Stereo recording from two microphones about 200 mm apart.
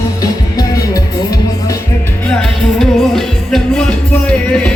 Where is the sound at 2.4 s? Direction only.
Centre (ahead or behind).